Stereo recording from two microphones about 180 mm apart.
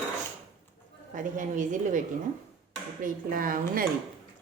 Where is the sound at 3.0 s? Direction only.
50° right (ahead or behind).